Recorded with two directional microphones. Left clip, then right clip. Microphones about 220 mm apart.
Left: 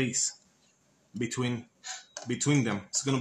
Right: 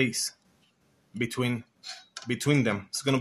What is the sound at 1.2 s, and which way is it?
Speech, 45° right (ahead or behind).